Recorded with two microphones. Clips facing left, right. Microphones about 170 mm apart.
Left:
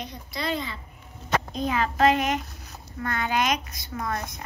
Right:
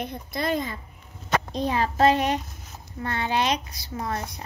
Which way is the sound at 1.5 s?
35° right (ahead or behind).